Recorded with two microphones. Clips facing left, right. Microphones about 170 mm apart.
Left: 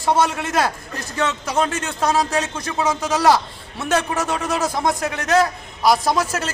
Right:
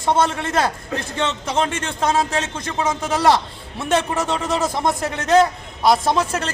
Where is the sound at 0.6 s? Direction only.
25° right (ahead or behind).